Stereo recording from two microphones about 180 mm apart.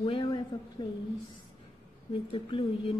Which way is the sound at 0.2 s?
20° left (ahead or behind).